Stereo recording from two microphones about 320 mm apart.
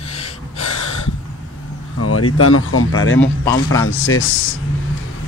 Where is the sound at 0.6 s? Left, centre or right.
Left.